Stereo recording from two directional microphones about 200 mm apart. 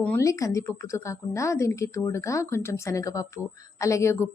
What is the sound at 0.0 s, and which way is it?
A woman's voice, 10° left (ahead or behind).